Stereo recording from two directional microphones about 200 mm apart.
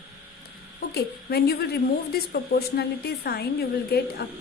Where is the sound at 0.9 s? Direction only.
55° left (ahead or behind).